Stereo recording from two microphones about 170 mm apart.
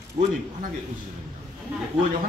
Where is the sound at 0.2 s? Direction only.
30° right (ahead or behind).